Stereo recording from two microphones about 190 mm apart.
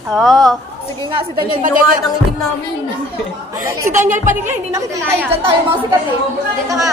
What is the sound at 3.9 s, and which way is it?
Speech, 40° right (ahead or behind).